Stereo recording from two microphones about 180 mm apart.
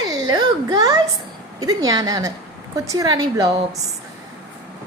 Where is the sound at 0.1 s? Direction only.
20° right (ahead or behind).